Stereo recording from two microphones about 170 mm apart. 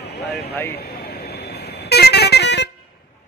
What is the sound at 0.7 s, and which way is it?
Vehicle, 70° left (ahead or behind).